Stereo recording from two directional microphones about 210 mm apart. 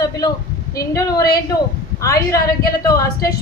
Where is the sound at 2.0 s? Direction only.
15° left (ahead or behind).